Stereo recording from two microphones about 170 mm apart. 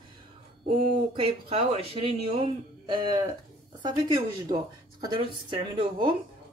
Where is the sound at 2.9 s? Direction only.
25° right (ahead or behind).